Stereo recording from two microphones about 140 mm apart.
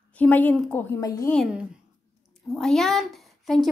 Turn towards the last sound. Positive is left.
turn(degrees=0)  # may be behind; listen again after turning